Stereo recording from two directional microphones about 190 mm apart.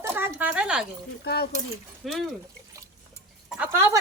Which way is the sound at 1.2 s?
55° left (ahead or behind).